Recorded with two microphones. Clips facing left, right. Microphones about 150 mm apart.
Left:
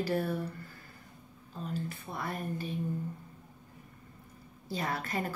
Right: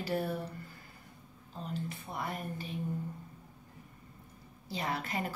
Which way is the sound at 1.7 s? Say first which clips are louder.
Left 1 dB; 20° right (ahead or behind).